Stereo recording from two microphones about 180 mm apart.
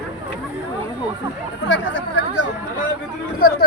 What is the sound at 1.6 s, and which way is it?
Chatter, 90° left.